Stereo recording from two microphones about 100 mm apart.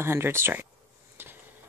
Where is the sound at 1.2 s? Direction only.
20° right (ahead or behind).